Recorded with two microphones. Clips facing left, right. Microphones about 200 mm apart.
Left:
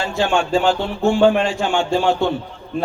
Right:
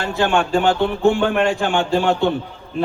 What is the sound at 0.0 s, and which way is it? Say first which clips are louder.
A man's voice: right 1 dB; 55° right (ahead or behind).